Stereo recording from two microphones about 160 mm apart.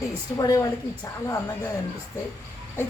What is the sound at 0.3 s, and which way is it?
Speech, 20° left (ahead or behind).